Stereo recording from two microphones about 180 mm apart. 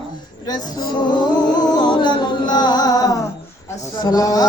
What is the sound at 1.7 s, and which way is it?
Music, 25° left (ahead or behind).